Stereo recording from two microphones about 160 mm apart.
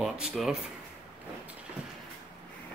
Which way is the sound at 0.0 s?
Centre (ahead or behind).